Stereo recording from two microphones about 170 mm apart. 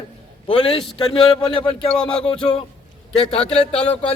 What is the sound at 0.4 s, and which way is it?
Speech, 35° left (ahead or behind).